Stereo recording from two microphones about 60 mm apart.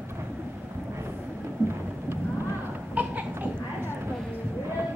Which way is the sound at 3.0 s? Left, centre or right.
Right.